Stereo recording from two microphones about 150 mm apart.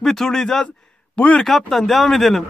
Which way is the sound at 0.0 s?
5° left (ahead or behind).